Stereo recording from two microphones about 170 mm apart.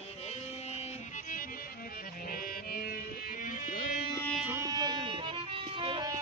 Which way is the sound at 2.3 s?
60° left (ahead or behind).